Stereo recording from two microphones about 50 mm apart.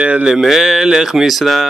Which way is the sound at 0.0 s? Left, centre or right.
Right.